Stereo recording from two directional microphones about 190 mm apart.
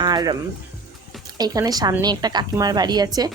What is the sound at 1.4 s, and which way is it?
Speech, 20° right (ahead or behind).